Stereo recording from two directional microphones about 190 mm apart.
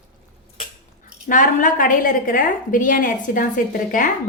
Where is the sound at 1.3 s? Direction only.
45° left (ahead or behind).